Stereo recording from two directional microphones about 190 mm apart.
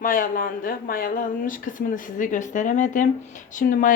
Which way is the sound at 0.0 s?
45° left (ahead or behind).